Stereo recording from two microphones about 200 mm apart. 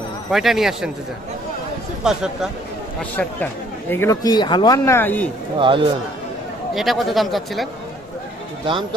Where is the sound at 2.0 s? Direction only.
5° right (ahead or behind).